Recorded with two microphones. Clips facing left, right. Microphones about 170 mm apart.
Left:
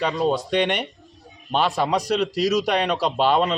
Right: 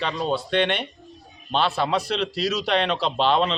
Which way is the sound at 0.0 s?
10° left (ahead or behind).